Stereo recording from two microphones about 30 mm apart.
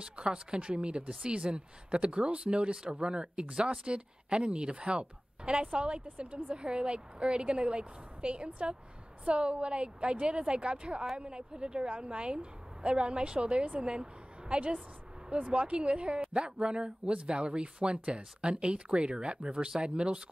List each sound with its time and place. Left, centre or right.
0.1 s speech: right